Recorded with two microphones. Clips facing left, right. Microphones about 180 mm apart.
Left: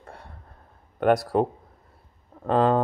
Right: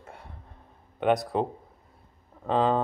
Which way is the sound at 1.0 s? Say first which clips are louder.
Left 4 dB; centre (ahead or behind).